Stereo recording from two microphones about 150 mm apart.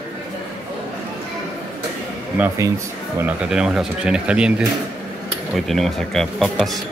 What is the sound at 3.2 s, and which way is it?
Speech, 5° right (ahead or behind).